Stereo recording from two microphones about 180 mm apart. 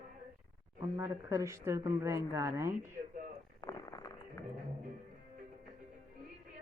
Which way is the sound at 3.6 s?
20° left (ahead or behind).